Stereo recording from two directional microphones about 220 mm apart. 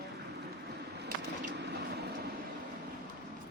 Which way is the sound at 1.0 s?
50° right (ahead or behind).